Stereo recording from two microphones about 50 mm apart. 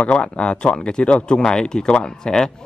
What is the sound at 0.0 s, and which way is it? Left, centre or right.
Speech, left.